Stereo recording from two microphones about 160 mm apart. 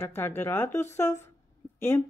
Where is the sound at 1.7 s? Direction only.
15° left (ahead or behind).